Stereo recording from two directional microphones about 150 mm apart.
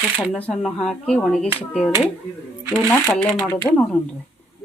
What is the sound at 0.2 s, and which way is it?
Speech, 5° left (ahead or behind).